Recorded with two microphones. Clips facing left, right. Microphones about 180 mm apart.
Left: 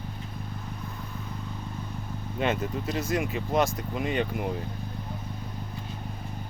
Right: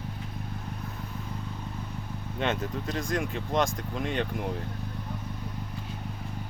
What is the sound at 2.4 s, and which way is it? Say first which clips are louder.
Speech: left 2 dB; 5° left (ahead or behind).